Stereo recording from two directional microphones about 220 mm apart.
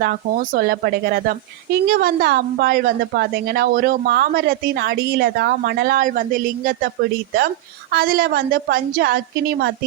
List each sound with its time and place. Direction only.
0.0 s a woman's voice: 40° right (ahead or behind)